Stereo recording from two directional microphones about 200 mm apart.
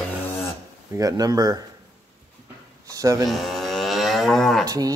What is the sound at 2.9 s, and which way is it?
Speech, 15° right (ahead or behind).